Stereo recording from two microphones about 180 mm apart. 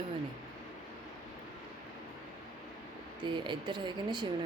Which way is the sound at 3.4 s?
25° right (ahead or behind).